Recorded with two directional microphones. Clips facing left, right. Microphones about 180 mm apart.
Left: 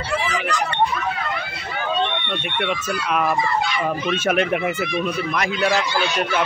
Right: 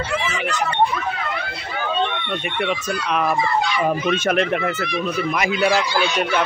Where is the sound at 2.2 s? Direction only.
5° right (ahead or behind).